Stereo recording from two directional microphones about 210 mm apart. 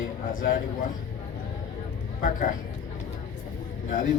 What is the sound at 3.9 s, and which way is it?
Speech, 40° left (ahead or behind).